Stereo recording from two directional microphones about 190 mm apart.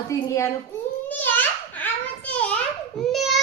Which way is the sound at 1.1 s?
10° left (ahead or behind).